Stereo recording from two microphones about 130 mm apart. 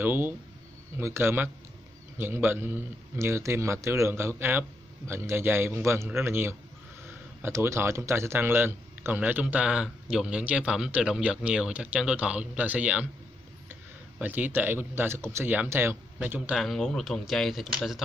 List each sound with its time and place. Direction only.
0.0 s a man's voice: 15° right (ahead or behind)
14.2 s speech: 15° right (ahead or behind)